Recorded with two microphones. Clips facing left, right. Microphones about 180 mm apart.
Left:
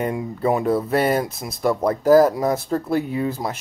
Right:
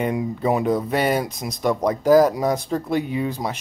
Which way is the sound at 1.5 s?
5° left (ahead or behind).